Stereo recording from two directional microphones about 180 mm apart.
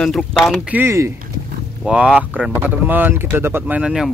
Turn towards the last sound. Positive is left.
turn(degrees=-5)  # may be behind; listen again after turning